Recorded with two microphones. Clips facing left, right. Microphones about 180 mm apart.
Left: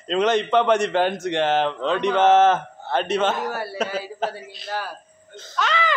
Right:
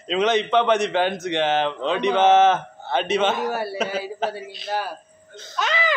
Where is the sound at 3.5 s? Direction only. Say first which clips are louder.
Right 3 dB; 15° right (ahead or behind).